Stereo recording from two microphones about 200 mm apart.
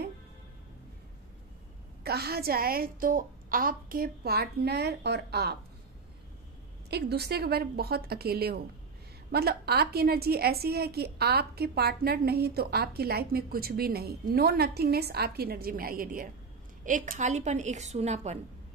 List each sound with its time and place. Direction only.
2.0 s a woman's voice: 50° right (ahead or behind)
6.9 s a woman's voice: 55° right (ahead or behind); by 18.4 s 35° right (ahead or behind)